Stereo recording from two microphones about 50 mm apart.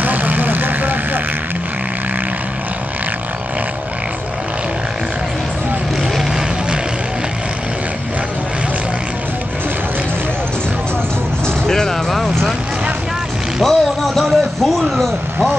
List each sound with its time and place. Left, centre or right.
0.0 s vehicle: right
11.4 s music: centre
13.7 s a sound: centre